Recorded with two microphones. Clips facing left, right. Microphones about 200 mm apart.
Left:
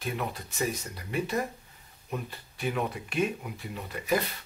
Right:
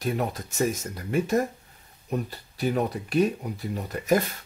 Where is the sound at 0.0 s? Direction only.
40° right (ahead or behind).